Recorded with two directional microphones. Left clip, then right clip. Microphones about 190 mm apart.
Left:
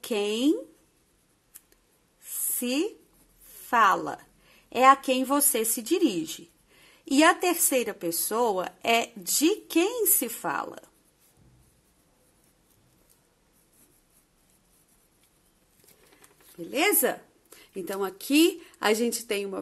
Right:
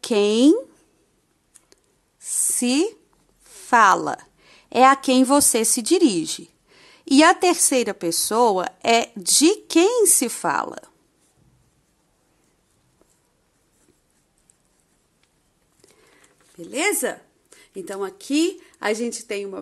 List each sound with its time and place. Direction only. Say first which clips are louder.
0.0 s a woman's voice: right 9 dB; 35° right (ahead or behind)
2.2 s a sound: right 9 dB; 35° right (ahead or behind)
3.7 s a woman's voice: right 7 dB; 30° right (ahead or behind)
16.5 s a woman's voice: right 2 dB; 20° right (ahead or behind)